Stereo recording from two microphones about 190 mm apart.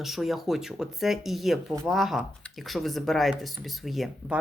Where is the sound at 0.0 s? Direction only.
Centre (ahead or behind).